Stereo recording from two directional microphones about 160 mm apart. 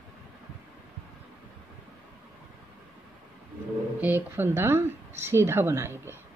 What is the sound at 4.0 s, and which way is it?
A woman's voice, 15° right (ahead or behind).